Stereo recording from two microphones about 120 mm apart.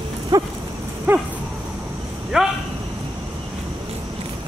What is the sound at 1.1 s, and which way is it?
Dog, 15° right (ahead or behind).